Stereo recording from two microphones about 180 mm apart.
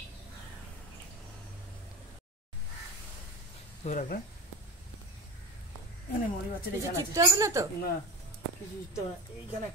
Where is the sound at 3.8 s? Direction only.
45° left (ahead or behind).